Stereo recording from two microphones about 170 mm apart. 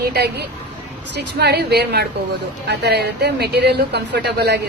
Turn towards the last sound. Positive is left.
turn(degrees=-75)  # may be behind; listen again after turning